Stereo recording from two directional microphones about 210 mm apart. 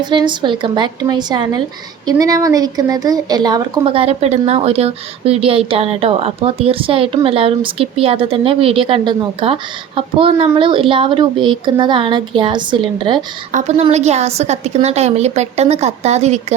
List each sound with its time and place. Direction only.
0.0 s speech: 20° right (ahead or behind)
13.5 s a woman's voice: 35° right (ahead or behind)